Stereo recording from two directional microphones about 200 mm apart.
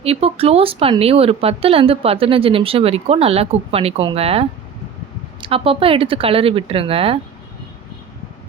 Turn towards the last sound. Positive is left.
turn(degrees=-30)  # may be behind; listen again after turning